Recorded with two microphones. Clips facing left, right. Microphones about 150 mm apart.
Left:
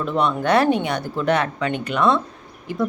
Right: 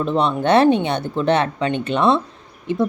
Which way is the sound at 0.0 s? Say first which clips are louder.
Right 2 dB; 25° right (ahead or behind).